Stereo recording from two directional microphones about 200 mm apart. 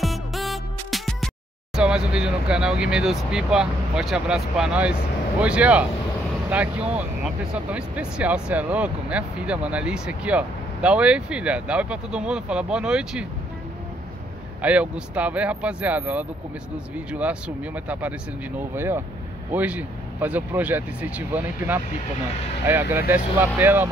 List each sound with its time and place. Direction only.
0.0 s music: centre (ahead or behind)
1.8 s speech: 5° right (ahead or behind)
14.6 s speech: 5° right (ahead or behind)